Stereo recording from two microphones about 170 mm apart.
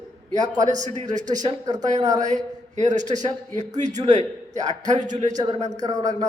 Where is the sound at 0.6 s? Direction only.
45° right (ahead or behind).